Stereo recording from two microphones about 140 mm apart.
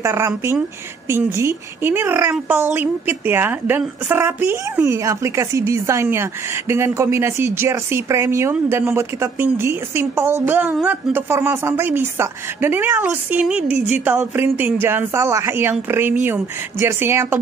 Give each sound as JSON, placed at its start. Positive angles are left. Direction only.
{"t": 0.0, "sound": "a woman's voice", "side_deg": -20}